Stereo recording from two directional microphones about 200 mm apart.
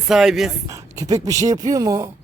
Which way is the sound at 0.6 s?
15° right (ahead or behind).